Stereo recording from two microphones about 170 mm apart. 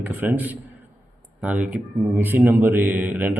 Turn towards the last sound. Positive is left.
turn(degrees=-10)  # may be behind; listen again after turning